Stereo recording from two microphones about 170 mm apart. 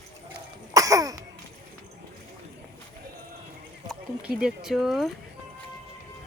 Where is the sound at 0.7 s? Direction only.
20° right (ahead or behind).